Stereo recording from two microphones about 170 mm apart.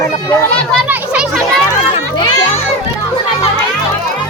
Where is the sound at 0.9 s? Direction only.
5° right (ahead or behind).